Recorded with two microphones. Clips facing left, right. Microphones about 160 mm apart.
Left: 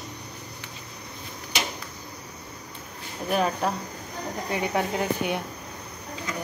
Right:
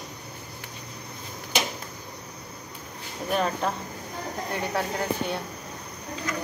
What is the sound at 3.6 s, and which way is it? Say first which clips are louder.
Speech: left 1 dB; 5° left (ahead or behind).